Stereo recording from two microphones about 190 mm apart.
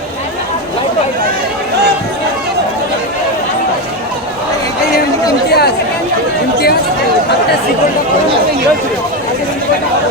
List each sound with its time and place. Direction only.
5.5 s chatter: 55° left (ahead or behind)